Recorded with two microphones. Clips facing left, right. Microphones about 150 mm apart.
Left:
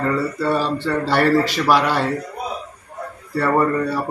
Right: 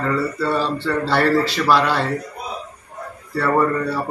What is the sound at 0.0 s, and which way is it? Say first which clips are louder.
Speech: left 1 dB; 10° left (ahead or behind).